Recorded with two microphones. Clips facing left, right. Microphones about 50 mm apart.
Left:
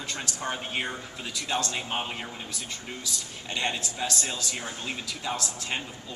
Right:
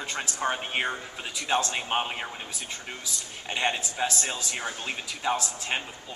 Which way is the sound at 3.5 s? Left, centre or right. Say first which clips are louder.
Right 2 dB; right.